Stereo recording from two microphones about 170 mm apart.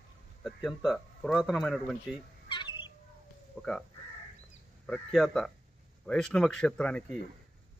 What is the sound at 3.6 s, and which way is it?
Crow, 5° left (ahead or behind).